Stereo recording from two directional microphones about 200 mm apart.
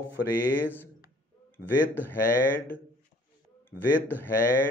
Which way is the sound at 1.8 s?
10° left (ahead or behind).